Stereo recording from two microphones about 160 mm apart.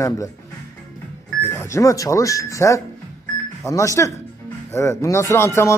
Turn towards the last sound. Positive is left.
turn(degrees=15)  # may be behind; listen again after turning